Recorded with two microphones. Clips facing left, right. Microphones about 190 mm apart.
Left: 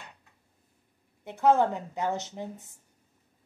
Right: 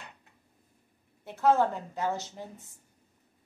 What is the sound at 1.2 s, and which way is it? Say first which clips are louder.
A woman's voice: left 2 dB; 20° left (ahead or behind).